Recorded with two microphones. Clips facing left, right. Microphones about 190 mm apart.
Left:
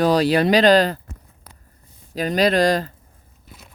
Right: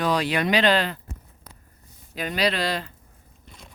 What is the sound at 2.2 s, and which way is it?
Speech, 40° left (ahead or behind).